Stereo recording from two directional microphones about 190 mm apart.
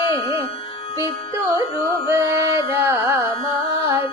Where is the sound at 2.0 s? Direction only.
15° right (ahead or behind).